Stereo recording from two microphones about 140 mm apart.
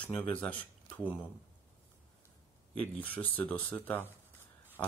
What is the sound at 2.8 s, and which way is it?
Speech, 10° left (ahead or behind).